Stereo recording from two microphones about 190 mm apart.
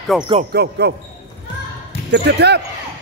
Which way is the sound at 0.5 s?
60° right (ahead or behind).